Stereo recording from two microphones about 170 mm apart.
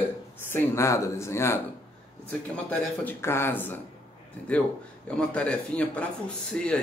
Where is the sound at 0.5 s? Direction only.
15° left (ahead or behind).